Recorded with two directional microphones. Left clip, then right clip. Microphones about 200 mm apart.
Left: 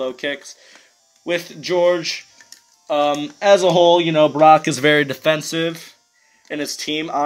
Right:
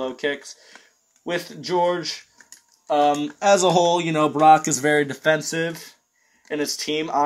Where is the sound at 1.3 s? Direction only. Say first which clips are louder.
Left 4 dB; 50° left (ahead or behind).